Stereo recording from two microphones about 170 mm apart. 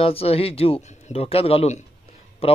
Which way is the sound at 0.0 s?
35° left (ahead or behind).